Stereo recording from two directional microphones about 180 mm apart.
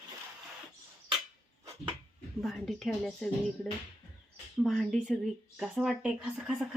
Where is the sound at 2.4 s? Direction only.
Centre (ahead or behind).